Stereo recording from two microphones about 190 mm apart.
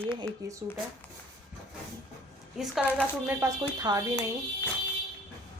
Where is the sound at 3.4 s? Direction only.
15° right (ahead or behind).